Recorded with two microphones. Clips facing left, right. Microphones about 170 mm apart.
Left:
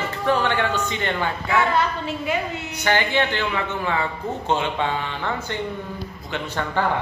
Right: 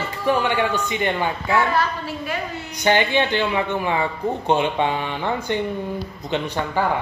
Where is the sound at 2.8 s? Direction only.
15° right (ahead or behind).